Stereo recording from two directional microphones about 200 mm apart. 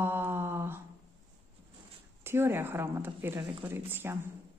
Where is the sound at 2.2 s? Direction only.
10° right (ahead or behind).